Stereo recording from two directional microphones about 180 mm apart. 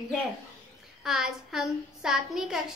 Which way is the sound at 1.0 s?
5° right (ahead or behind).